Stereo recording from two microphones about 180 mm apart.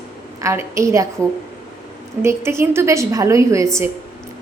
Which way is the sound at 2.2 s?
15° right (ahead or behind).